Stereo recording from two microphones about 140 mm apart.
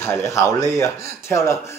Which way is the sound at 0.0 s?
20° left (ahead or behind).